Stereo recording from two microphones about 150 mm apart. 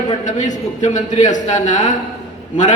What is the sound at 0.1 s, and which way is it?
A man's voice, 55° left (ahead or behind).